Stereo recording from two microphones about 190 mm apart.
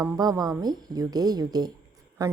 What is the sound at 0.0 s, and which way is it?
A woman's voice, 15° right (ahead or behind).